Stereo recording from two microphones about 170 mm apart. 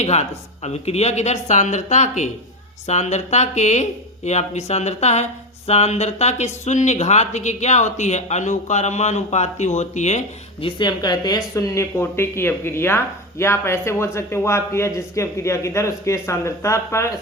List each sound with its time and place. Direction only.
0.0 s speech: 40° left (ahead or behind)
10.8 s a man's voice: 25° left (ahead or behind)